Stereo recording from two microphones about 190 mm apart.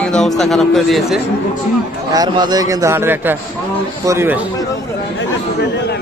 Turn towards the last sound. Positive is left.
turn(degrees=-10)  # may be behind; listen again after turning